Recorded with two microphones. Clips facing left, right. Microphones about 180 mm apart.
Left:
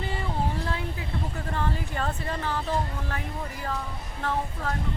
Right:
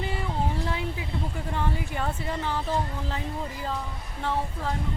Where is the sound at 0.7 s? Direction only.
20° right (ahead or behind).